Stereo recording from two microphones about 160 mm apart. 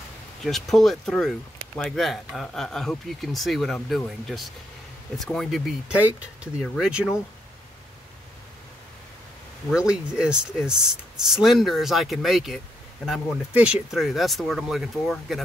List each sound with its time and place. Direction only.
0.4 s speech: centre (ahead or behind)
9.7 s speech: 5° right (ahead or behind)